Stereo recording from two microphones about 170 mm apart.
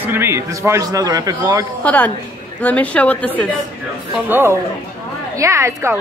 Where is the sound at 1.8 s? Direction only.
10° left (ahead or behind).